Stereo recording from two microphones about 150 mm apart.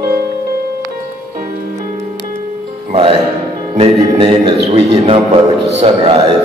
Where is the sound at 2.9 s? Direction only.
35° right (ahead or behind).